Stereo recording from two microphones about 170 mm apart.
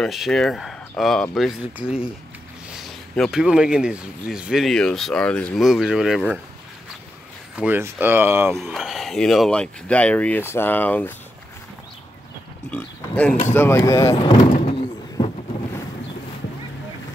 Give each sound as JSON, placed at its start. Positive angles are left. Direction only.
{"t": 0.0, "sound": "speech", "side_deg": 0}
{"t": 7.5, "sound": "speech", "side_deg": -10}
{"t": 8.5, "sound": "speech", "side_deg": 0}
{"t": 12.7, "sound": "speech", "side_deg": 10}